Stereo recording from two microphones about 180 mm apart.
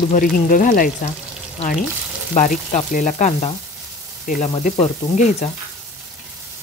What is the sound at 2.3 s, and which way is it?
Speech, 45° left (ahead or behind).